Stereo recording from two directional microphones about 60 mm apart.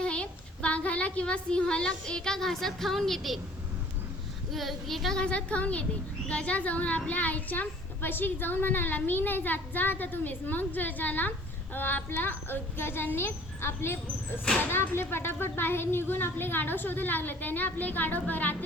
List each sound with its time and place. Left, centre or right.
0.0 s a woman's voice: centre
4.5 s speech: centre
5.1 s a woman's voice: centre